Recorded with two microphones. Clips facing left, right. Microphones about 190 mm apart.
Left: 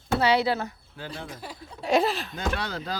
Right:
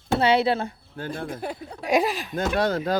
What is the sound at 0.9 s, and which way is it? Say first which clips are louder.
Speech: right 7 dB; 50° right (ahead or behind).